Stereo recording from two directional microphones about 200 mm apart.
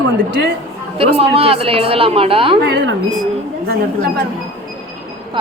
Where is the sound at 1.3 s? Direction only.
30° right (ahead or behind).